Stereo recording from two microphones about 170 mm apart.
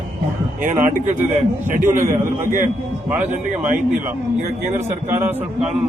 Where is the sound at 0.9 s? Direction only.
45° right (ahead or behind).